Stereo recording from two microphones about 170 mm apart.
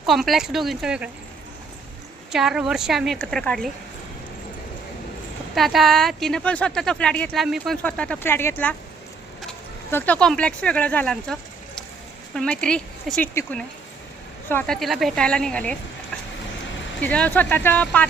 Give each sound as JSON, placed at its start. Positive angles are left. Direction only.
{"t": 0.0, "sound": "a woman's voice", "side_deg": 0}
{"t": 2.3, "sound": "a woman's voice", "side_deg": -5}
{"t": 5.5, "sound": "a woman's voice", "side_deg": 0}
{"t": 9.9, "sound": "speech", "side_deg": 5}
{"t": 12.4, "sound": "a woman's voice", "side_deg": 5}
{"t": 17.0, "sound": "speech", "side_deg": 10}